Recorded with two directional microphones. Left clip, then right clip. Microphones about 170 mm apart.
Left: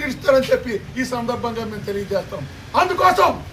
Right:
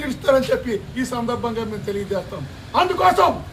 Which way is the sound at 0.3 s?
5° right (ahead or behind).